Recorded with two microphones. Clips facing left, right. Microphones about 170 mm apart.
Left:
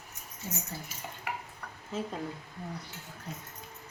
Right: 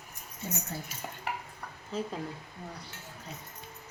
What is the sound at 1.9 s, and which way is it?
Speech, centre (ahead or behind).